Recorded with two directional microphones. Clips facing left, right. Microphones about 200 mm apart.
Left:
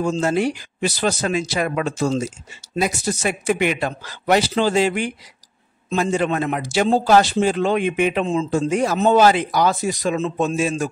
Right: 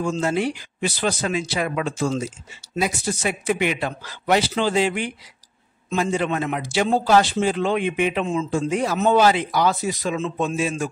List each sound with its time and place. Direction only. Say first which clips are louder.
0.0 s speech: left 3 dB; 40° left (ahead or behind)
8.3 s a man's voice: left 3 dB; 35° left (ahead or behind)